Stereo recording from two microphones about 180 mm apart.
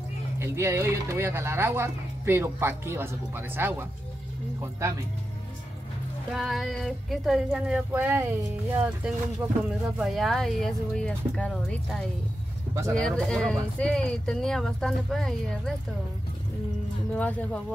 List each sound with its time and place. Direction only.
0.4 s speech: 15° right (ahead or behind)
6.3 s music: centre (ahead or behind)
17.1 s speech: 10° left (ahead or behind)